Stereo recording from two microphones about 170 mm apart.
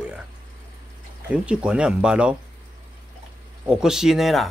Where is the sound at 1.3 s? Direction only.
5° right (ahead or behind).